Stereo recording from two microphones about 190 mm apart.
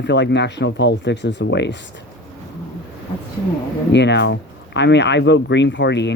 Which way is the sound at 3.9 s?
65° left (ahead or behind).